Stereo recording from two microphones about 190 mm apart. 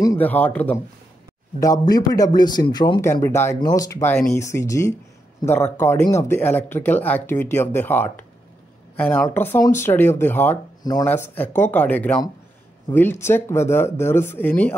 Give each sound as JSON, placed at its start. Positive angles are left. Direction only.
{"t": 0.0, "sound": "speech", "side_deg": 15}
{"t": 1.6, "sound": "speech", "side_deg": 20}
{"t": 11.1, "sound": "speech", "side_deg": 10}